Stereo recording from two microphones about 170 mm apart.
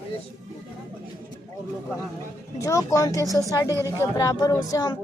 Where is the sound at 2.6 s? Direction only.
20° left (ahead or behind).